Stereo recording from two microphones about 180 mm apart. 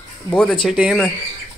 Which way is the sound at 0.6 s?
Centre (ahead or behind).